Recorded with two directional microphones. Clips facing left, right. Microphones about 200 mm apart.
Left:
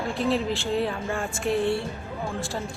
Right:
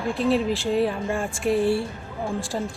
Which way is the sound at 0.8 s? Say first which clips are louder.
Right 4 dB; 5° right (ahead or behind).